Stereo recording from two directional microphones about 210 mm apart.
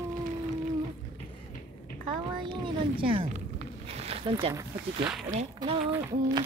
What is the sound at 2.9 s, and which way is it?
Speech, 25° right (ahead or behind).